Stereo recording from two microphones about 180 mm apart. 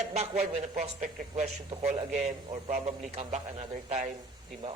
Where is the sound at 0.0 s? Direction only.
35° right (ahead or behind).